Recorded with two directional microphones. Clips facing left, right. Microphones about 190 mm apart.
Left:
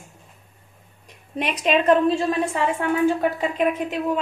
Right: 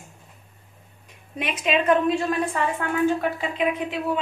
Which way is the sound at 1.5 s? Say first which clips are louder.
Left 3 dB; 35° left (ahead or behind).